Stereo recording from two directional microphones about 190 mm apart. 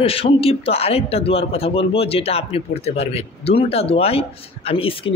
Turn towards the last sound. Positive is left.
turn(degrees=30)  # may be behind; listen again after turning